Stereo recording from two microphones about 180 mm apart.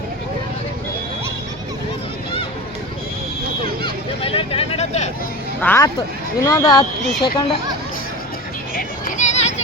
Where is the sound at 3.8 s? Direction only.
30° left (ahead or behind).